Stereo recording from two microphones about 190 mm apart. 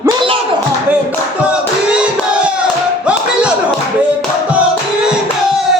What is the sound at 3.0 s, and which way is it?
Music, 5° right (ahead or behind).